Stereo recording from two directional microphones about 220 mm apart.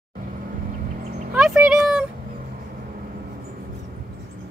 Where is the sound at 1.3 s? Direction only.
5° right (ahead or behind).